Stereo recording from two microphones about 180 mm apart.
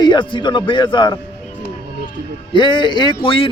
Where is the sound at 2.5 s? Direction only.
25° left (ahead or behind).